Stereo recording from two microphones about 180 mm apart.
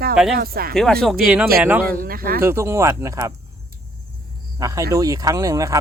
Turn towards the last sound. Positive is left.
turn(degrees=-20)  # may be behind; listen again after turning